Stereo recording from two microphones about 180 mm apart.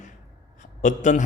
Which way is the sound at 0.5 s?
45° left (ahead or behind).